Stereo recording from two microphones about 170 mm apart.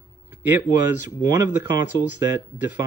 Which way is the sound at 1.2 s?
15° right (ahead or behind).